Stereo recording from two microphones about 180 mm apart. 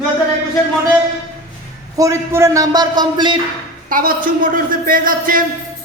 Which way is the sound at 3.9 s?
55° right (ahead or behind).